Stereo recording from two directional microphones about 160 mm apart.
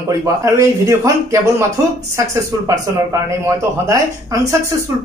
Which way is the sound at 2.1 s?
20° right (ahead or behind).